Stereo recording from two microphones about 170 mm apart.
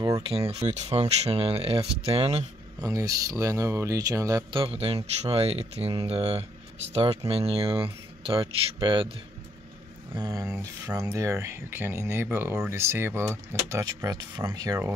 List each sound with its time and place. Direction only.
0.3 s speech: 35° right (ahead or behind)
2.8 s speech: 20° right (ahead or behind)
10.1 s speech: 20° right (ahead or behind)